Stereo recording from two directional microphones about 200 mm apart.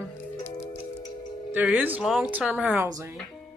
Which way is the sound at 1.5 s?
10° right (ahead or behind).